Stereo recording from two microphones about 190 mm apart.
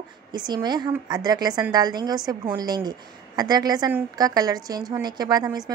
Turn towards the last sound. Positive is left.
turn(degrees=-20)  # may be behind; listen again after turning